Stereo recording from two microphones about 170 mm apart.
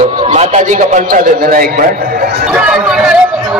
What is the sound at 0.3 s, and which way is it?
A man's voice, 45° right (ahead or behind).